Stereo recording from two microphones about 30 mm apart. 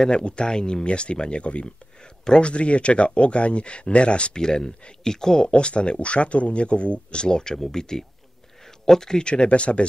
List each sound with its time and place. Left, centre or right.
0.1 s speech: left
4.4 s speech: left
5.5 s speech: left; by 9.2 s centre
9.2 s speech: left